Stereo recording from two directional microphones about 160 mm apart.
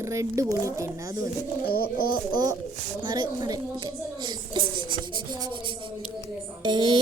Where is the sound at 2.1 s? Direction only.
25° right (ahead or behind).